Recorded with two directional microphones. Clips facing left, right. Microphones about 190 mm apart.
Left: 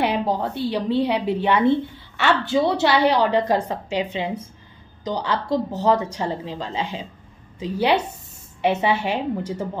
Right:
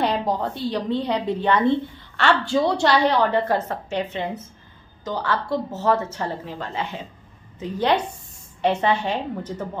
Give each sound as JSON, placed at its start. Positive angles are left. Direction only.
{"t": 0.0, "sound": "a woman's voice", "side_deg": 5}